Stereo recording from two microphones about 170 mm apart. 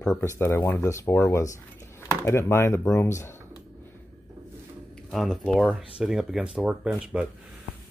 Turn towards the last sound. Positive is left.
turn(degrees=-5)  # may be behind; listen again after turning